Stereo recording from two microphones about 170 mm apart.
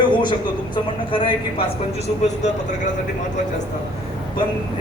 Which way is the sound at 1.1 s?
30° left (ahead or behind).